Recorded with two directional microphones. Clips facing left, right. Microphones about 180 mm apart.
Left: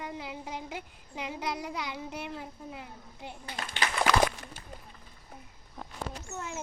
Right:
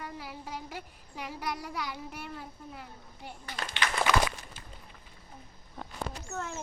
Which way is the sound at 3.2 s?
25° left (ahead or behind).